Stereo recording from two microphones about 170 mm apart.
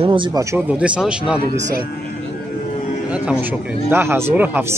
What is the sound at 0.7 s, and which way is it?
Speech, 5° right (ahead or behind).